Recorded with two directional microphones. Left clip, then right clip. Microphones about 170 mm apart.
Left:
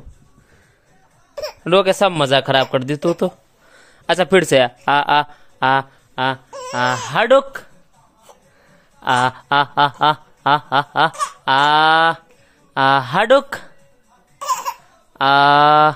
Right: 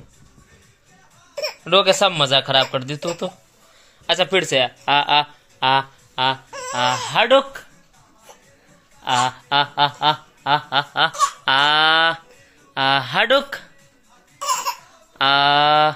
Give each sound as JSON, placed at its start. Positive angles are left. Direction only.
{"t": 1.3, "sound": "hiccup", "side_deg": 15}
{"t": 1.6, "sound": "a man's voice", "side_deg": 80}
{"t": 9.0, "sound": "speech", "side_deg": 70}
{"t": 12.7, "sound": "a man's voice", "side_deg": 55}
{"t": 15.1, "sound": "a man's voice", "side_deg": 45}